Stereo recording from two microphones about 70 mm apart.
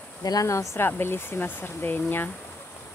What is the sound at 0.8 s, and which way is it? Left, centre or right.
Speech, left.